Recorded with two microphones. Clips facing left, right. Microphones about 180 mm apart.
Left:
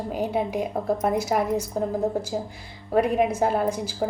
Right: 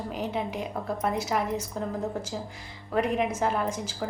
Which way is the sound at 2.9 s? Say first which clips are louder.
Left 5 dB; 35° left (ahead or behind).